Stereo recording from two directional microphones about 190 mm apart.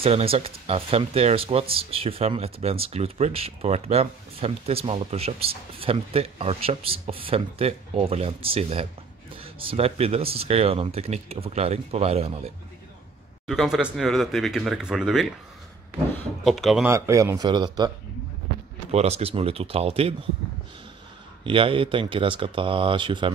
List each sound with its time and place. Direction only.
0.0 s speech: 30° right (ahead or behind)
13.5 s speech: centre (ahead or behind)
16.4 s speech: centre (ahead or behind)
16.8 s speech: 15° right (ahead or behind)
18.9 s speech: 35° right (ahead or behind)
21.5 s speech: 30° right (ahead or behind)